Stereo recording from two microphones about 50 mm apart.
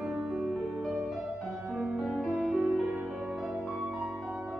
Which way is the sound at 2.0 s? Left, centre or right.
Centre.